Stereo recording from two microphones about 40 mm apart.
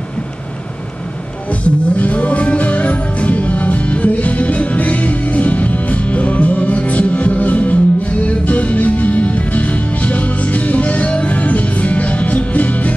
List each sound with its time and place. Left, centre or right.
1.5 s music: left